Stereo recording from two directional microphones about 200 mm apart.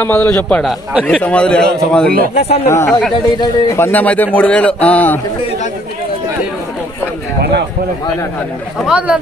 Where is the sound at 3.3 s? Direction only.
20° left (ahead or behind).